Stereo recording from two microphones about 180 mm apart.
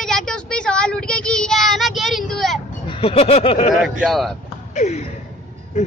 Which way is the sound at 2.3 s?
Centre (ahead or behind).